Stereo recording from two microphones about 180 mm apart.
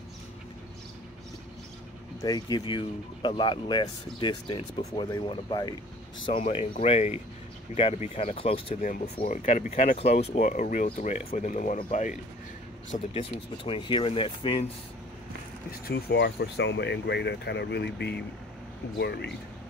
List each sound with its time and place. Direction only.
2.2 s speech: 20° left (ahead or behind)
8.8 s speech: 50° left (ahead or behind)
9.4 s speech: 35° left (ahead or behind)
13.1 s speech: 30° left (ahead or behind)
15.9 s speech: 70° left (ahead or behind)